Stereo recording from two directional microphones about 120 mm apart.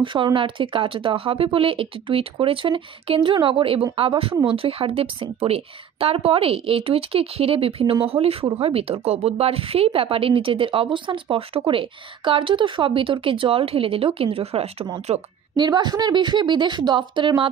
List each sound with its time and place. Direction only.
0.0 s speech: 45° right (ahead or behind)
15.5 s speech: 35° right (ahead or behind)